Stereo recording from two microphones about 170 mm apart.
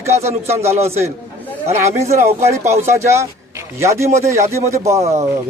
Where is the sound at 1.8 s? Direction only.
40° right (ahead or behind).